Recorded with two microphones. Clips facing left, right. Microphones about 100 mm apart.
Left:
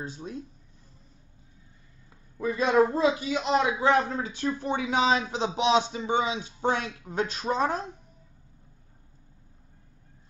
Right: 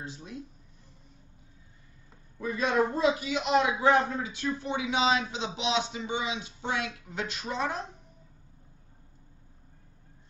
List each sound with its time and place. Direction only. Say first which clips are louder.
0.0 s a man's voice: left 4 dB; 35° left (ahead or behind)
2.4 s a man's voice: left 5 dB; 30° left (ahead or behind)